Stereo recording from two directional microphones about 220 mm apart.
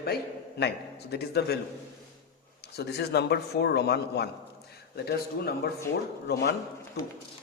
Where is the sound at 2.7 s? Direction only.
45° left (ahead or behind).